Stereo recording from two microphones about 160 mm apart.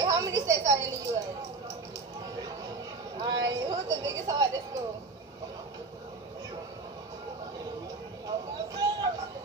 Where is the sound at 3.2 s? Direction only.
25° right (ahead or behind).